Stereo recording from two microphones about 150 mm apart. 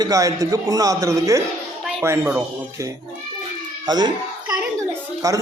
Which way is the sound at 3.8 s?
30° right (ahead or behind).